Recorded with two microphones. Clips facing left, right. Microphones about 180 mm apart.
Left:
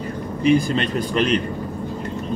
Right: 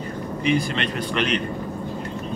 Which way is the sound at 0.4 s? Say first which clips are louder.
Left 5 dB; 35° left (ahead or behind).